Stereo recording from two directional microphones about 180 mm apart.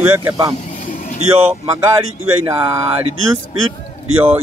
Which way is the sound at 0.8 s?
50° left (ahead or behind).